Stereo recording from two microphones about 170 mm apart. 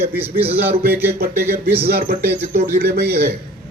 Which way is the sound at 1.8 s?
65° right (ahead or behind).